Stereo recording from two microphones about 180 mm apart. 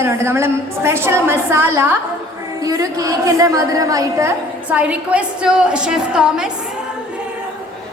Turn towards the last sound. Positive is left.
turn(degrees=-5)  # may be behind; listen again after turning